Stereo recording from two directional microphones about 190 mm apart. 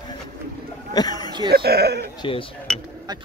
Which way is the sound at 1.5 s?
55° right (ahead or behind).